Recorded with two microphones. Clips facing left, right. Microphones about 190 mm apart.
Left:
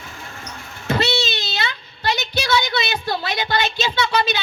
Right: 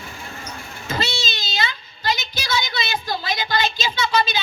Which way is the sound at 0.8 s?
65° left (ahead or behind).